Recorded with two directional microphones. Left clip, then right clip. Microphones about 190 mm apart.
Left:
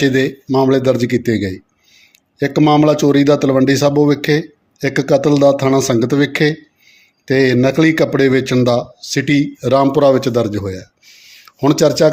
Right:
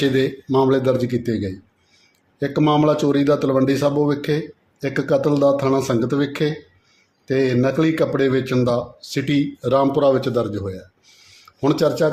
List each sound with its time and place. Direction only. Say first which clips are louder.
0.0 s speech: left 4 dB; 20° left (ahead or behind)